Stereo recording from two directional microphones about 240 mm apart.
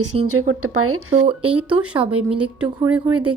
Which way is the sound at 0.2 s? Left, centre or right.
Right.